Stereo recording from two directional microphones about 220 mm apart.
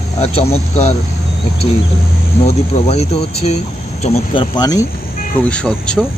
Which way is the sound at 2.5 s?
30° left (ahead or behind).